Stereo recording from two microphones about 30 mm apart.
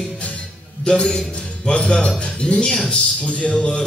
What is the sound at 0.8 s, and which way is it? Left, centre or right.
Music, left.